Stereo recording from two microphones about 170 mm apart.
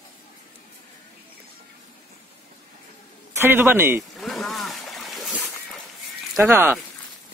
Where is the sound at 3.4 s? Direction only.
10° right (ahead or behind).